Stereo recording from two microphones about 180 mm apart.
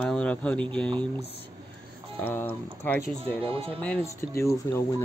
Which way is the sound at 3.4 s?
30° right (ahead or behind).